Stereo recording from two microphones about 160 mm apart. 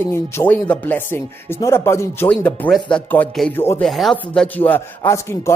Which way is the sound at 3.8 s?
Centre (ahead or behind).